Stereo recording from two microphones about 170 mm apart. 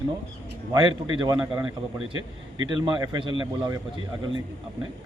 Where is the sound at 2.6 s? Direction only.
25° right (ahead or behind).